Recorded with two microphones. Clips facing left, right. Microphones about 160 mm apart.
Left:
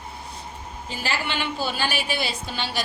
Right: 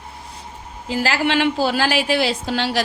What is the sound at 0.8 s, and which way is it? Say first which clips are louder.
A woman's voice: right 9 dB; 90° right.